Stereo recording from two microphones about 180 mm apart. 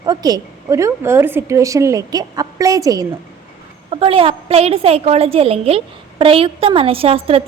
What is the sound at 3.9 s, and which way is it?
A woman's voice, 30° right (ahead or behind).